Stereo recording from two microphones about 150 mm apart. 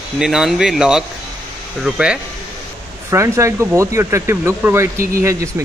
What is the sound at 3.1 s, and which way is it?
Speech, 20° right (ahead or behind).